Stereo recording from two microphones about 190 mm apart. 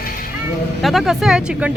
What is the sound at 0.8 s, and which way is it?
Speech, centre (ahead or behind).